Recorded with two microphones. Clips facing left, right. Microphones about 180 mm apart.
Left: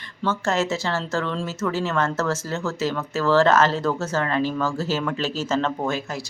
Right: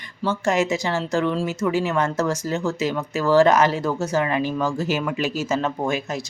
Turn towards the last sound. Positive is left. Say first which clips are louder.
# right 1 dB
turn(degrees=-10)  # may be behind; listen again after turning